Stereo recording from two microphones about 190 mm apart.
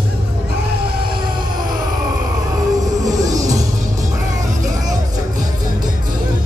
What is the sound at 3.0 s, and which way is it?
Music, 20° right (ahead or behind).